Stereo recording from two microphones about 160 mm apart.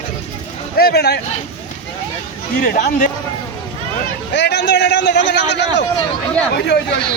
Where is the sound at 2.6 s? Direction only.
60° left (ahead or behind).